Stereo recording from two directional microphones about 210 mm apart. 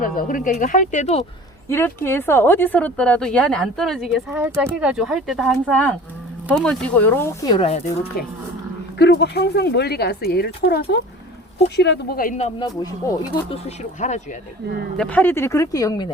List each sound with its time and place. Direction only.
0.0 s speech: 40° left (ahead or behind)
1.6 s speech: 10° left (ahead or behind)
8.1 s speech: 45° left (ahead or behind)
12.4 s speech: 20° left (ahead or behind)
13.5 s speech: 30° left (ahead or behind)
14.9 s speech: 5° left (ahead or behind)